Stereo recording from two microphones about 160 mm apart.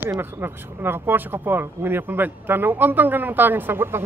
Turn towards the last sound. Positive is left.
turn(degrees=-15)  # may be behind; listen again after turning